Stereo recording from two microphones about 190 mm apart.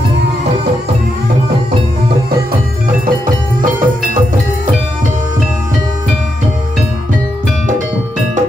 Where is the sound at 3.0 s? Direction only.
45° right (ahead or behind).